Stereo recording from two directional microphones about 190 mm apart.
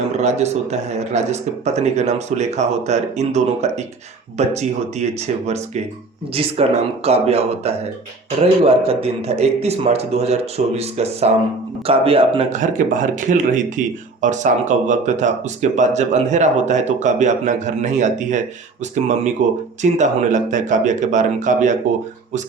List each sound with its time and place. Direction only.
0.2 s speech: 35° right (ahead or behind)